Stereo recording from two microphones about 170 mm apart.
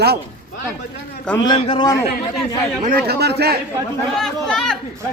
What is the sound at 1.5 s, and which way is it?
Speech, 30° left (ahead or behind).